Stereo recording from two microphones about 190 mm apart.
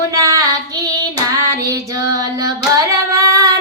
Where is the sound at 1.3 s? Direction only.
15° right (ahead or behind).